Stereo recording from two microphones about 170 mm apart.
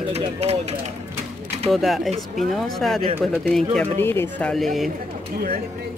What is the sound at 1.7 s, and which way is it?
Speech, centre (ahead or behind).